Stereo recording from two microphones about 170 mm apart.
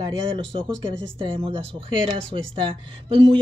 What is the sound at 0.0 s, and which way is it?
Speech, 30° right (ahead or behind).